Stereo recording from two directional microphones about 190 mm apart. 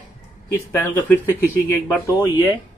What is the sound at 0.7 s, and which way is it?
Speech, 10° left (ahead or behind).